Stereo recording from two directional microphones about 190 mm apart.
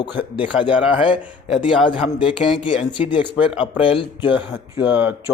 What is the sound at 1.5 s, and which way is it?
Speech, 25° left (ahead or behind).